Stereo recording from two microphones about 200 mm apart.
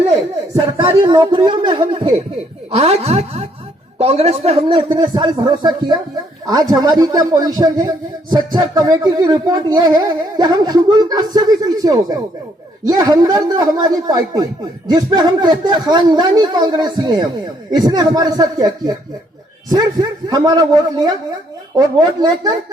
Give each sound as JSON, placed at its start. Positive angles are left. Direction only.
{"t": 0.9, "sound": "a woman's voice", "side_deg": -25}